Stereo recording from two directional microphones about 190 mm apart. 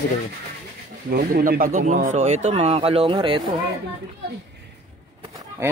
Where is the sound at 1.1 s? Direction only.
50° right (ahead or behind); by 3.4 s 25° right (ahead or behind).